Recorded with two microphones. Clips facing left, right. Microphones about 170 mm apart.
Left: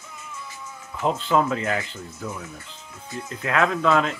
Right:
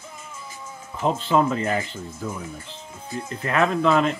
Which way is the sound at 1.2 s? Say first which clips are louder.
Right 2 dB; 5° right (ahead or behind).